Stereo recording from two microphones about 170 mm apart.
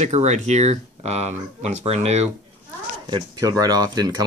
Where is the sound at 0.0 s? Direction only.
40° right (ahead or behind).